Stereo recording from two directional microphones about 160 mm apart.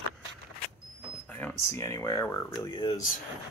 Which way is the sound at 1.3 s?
15° left (ahead or behind).